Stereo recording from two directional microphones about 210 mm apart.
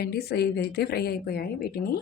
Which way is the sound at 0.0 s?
50° left (ahead or behind).